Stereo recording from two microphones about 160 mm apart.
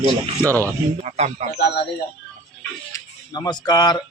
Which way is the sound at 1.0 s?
45° right (ahead or behind).